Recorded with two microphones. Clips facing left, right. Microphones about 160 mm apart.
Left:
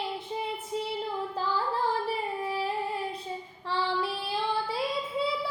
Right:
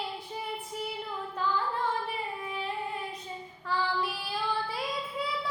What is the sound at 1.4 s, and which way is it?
Child singing, 35° left (ahead or behind).